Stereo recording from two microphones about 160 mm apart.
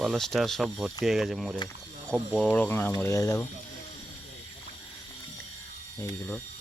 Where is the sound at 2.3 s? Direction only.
10° left (ahead or behind).